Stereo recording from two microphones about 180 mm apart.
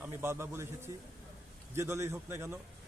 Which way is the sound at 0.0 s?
15° right (ahead or behind).